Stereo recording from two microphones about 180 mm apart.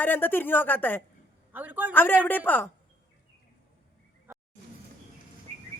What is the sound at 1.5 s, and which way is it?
Speech, 10° right (ahead or behind).